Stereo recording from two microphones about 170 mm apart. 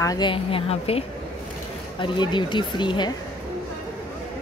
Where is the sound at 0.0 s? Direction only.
25° left (ahead or behind).